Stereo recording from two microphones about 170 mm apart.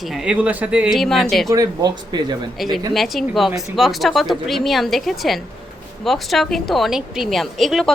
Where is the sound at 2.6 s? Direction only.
Centre (ahead or behind).